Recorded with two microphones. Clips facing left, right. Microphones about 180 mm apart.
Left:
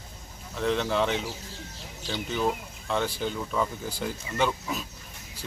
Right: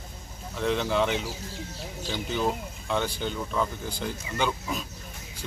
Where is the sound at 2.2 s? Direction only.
Centre (ahead or behind).